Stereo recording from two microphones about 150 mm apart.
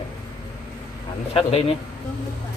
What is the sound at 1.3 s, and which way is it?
Speech, 40° left (ahead or behind).